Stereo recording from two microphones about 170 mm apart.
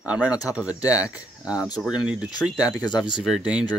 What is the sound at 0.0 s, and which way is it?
Speech, 10° right (ahead or behind).